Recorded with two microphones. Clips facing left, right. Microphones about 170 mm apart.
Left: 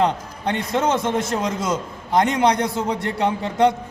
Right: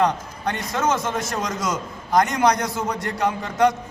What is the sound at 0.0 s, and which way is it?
A man's voice, 25° left (ahead or behind).